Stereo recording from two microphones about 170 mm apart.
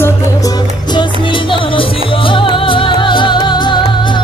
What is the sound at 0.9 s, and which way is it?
Music, 30° left (ahead or behind).